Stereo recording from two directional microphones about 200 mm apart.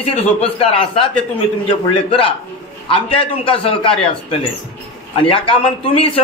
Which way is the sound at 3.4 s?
25° left (ahead or behind).